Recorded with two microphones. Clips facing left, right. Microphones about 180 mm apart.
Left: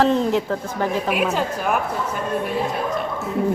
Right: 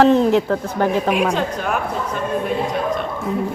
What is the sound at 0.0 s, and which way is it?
A woman's voice, 65° right (ahead or behind).